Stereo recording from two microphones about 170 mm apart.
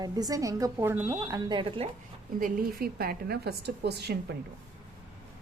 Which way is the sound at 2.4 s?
60° right (ahead or behind).